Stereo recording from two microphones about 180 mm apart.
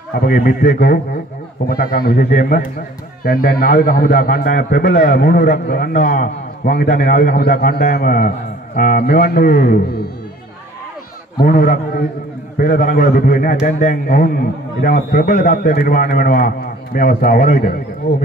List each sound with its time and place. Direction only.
0.2 s a man's voice: 55° left (ahead or behind)
11.4 s a man's voice: 50° left (ahead or behind)